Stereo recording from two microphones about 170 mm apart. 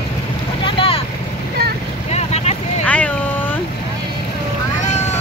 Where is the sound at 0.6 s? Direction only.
30° left (ahead or behind).